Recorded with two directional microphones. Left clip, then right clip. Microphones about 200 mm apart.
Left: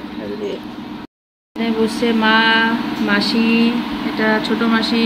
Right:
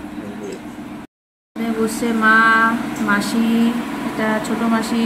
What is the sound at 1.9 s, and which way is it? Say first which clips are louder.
Speech: right 2 dB; 10° right (ahead or behind).